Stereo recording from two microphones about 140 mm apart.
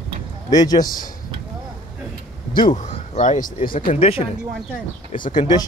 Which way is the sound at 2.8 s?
60° left (ahead or behind).